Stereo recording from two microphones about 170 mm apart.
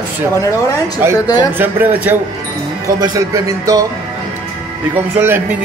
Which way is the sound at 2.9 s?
20° right (ahead or behind).